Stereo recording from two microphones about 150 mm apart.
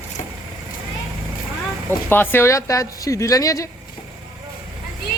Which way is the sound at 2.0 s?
15° left (ahead or behind).